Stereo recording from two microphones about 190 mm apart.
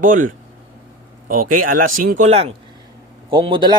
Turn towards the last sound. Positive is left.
turn(degrees=-25)  # may be behind; listen again after turning